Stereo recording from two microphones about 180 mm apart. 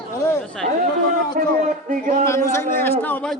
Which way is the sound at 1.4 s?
55° right (ahead or behind).